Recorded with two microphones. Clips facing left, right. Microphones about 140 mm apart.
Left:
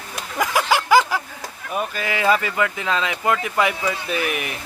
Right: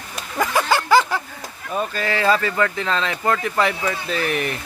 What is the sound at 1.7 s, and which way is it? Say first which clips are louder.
Speech: right 2 dB; 10° left (ahead or behind).